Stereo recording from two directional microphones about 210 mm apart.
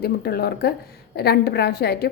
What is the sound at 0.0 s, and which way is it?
A woman's voice, 50° left (ahead or behind).